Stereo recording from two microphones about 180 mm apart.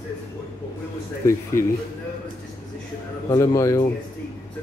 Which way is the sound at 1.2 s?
15° left (ahead or behind).